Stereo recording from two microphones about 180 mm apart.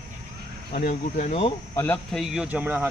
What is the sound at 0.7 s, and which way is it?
Speech, 45° left (ahead or behind).